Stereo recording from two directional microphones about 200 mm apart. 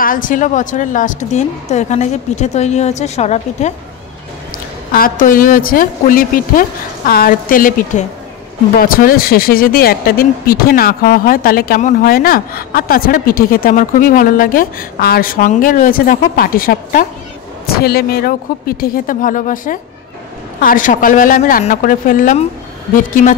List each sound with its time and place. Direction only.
0.0 s a woman's voice: 40° left (ahead or behind)
4.9 s a woman's voice: 45° left (ahead or behind)